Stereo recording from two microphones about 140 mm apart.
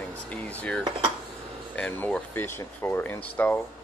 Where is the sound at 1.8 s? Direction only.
10° left (ahead or behind).